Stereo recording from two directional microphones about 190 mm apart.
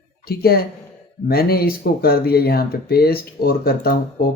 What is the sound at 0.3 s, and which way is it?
A man's voice, 55° left (ahead or behind).